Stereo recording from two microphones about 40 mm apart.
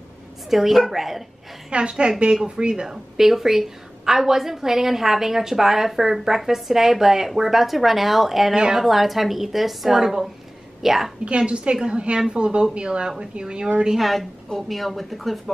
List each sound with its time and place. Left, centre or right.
0.5 s a woman's voice: centre
1.7 s a woman's voice: right; by 9.9 s centre
9.9 s a woman's voice: centre
11.2 s a woman's voice: right
13.9 s a woman's voice: centre